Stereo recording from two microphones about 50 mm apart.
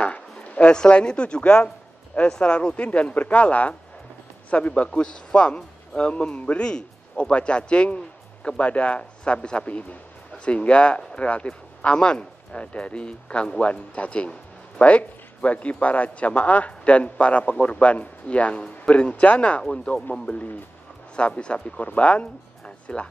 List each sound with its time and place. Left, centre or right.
0.0 s speech: left
20.1 s speech: left